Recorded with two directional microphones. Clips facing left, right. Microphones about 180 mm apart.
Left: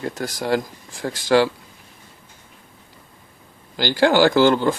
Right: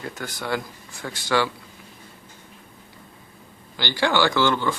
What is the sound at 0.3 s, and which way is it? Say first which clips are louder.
Speech: left 6 dB; 40° left (ahead or behind).